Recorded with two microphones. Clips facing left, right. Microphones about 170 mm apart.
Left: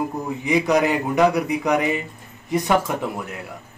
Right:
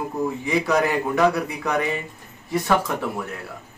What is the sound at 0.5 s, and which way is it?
A man's voice, 15° left (ahead or behind).